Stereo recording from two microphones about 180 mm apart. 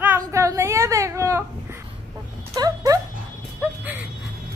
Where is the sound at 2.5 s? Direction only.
20° right (ahead or behind).